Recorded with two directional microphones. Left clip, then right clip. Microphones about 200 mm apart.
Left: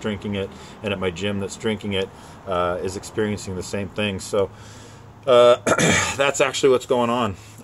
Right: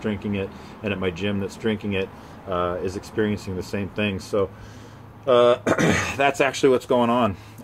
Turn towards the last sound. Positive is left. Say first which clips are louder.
# right 1 dB
turn(degrees=-10)  # may be behind; listen again after turning